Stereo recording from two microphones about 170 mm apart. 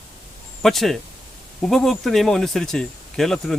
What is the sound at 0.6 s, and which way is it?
Speech, centre (ahead or behind).